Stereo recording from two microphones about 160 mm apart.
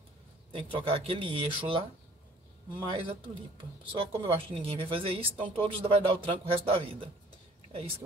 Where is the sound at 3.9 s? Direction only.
35° right (ahead or behind).